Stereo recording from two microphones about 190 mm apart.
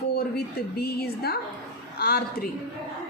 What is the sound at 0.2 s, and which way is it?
A woman's voice, 55° left (ahead or behind).